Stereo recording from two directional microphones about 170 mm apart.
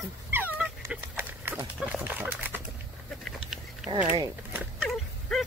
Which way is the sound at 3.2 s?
5° right (ahead or behind).